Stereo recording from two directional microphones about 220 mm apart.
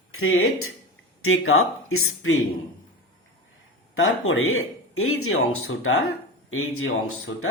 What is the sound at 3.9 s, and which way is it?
Speech, 70° left (ahead or behind).